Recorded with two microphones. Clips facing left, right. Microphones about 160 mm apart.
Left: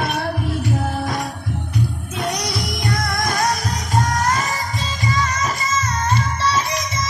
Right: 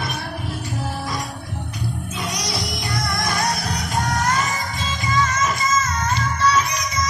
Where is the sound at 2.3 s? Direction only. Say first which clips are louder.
Left 4 dB; 55° left (ahead or behind); by 6.6 s 30° left (ahead or behind).